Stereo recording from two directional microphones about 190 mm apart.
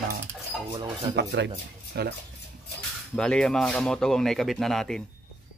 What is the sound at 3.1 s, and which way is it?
Speech, 5° left (ahead or behind).